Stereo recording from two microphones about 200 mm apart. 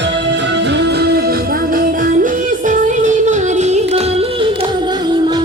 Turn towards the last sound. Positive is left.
turn(degrees=-30)  # may be behind; listen again after turning